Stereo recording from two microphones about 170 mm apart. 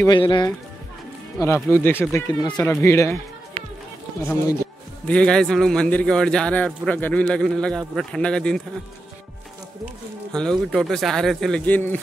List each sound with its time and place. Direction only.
0.0 s speech: 25° left (ahead or behind)
5.0 s a man's voice: 5° left (ahead or behind)
10.3 s a man's voice: 5° left (ahead or behind)